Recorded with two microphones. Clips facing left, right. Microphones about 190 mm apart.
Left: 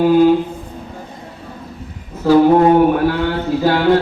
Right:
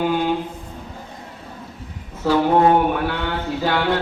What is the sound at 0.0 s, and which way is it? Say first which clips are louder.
Mantra: left 10 dB; 40° left (ahead or behind).